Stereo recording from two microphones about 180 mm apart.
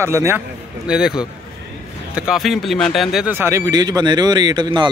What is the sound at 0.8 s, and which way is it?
A man's voice, 5° right (ahead or behind).